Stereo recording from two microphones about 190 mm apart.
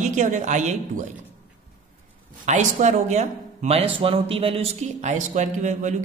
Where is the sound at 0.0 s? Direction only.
40° right (ahead or behind).